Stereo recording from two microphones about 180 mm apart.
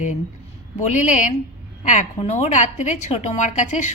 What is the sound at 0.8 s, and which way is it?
A woman's voice, 40° left (ahead or behind).